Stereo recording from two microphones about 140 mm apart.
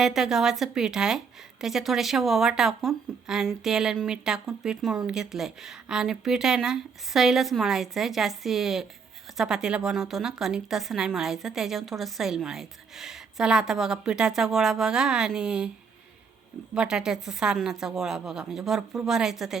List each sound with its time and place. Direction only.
0.0 s a woman's voice: 5° right (ahead or behind)
16.7 s a woman's voice: 5° right (ahead or behind)